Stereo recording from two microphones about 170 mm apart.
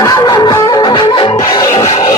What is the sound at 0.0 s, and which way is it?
Music, 20° left (ahead or behind).